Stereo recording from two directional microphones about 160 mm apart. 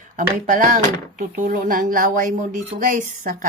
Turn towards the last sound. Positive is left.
turn(degrees=-55)  # may be behind; listen again after turning